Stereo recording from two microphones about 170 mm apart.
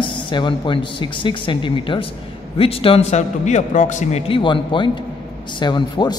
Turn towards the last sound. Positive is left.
turn(degrees=25)  # may be behind; listen again after turning